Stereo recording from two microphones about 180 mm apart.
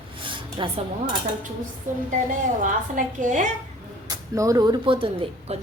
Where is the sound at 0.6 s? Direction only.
30° right (ahead or behind).